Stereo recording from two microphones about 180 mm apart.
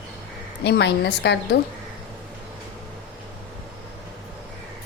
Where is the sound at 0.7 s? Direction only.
70° left (ahead or behind).